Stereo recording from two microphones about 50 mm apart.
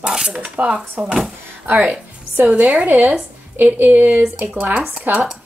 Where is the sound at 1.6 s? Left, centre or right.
Right.